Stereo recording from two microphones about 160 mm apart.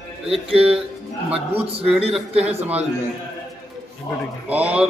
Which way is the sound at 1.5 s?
40° right (ahead or behind).